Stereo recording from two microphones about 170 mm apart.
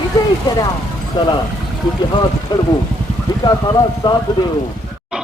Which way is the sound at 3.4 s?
25° left (ahead or behind).